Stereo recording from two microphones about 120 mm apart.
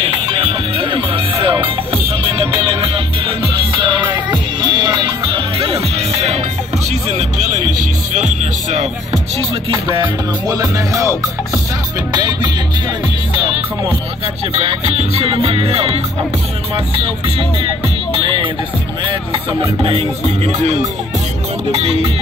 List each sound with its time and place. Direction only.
0.0 s music: 45° right (ahead or behind); by 9.2 s 75° right (ahead or behind)
9.8 s music: 45° right (ahead or behind)
10.6 s music: 30° right (ahead or behind)
14.5 s music: 55° right (ahead or behind)
19.8 s music: 50° right (ahead or behind)
21.7 s music: 55° right (ahead or behind)